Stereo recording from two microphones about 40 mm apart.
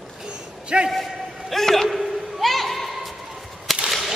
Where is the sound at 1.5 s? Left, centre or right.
Centre.